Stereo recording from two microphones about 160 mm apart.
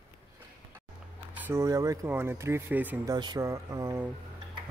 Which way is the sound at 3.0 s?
25° right (ahead or behind).